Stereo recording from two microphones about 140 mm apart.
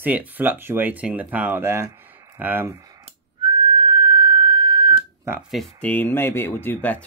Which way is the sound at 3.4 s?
35° right (ahead or behind).